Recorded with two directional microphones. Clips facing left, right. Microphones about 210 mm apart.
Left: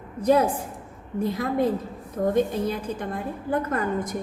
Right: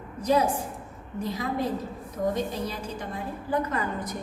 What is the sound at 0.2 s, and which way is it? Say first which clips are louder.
A woman's voice: left 3 dB; 55° left (ahead or behind).